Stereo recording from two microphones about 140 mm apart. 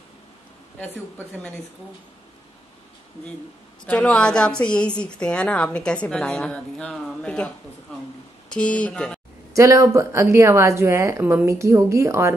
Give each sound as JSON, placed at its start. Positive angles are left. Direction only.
{"t": 0.7, "sound": "a woman's voice", "side_deg": 10}
{"t": 3.8, "sound": "a woman's voice", "side_deg": 10}
{"t": 9.5, "sound": "a woman's voice", "side_deg": -20}